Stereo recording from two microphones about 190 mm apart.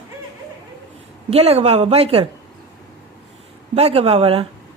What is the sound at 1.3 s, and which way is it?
Speech, 35° right (ahead or behind).